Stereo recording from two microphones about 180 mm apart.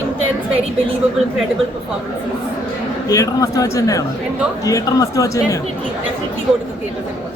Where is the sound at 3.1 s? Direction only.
20° left (ahead or behind).